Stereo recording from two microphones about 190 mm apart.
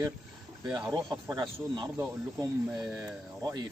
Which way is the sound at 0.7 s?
20° right (ahead or behind).